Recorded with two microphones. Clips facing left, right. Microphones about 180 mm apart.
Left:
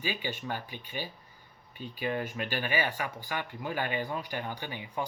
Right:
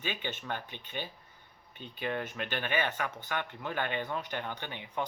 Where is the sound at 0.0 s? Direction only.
10° left (ahead or behind).